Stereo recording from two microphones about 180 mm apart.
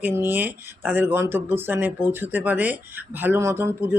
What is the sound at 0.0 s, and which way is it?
Speech, 10° right (ahead or behind).